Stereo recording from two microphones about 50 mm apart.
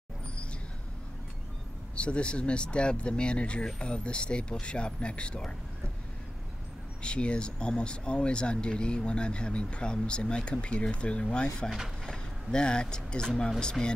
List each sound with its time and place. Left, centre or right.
2.0 s speech: left
7.0 s speech: left